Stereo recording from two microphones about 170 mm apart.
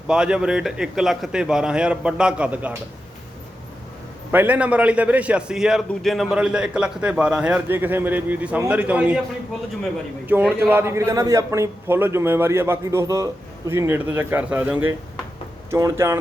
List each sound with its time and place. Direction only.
0.1 s a man's voice: 5° right (ahead or behind)
4.3 s a man's voice: 10° right (ahead or behind)
10.2 s a man's voice: 10° right (ahead or behind)